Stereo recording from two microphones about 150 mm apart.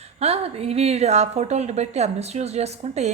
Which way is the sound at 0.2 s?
45° right (ahead or behind).